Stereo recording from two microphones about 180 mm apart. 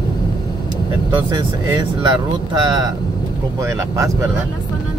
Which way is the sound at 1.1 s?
25° right (ahead or behind).